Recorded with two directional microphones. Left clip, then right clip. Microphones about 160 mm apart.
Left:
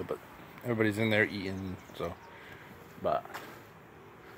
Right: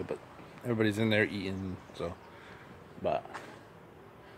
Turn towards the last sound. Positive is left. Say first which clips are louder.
# left 1 dB
turn(degrees=-15)  # may be behind; listen again after turning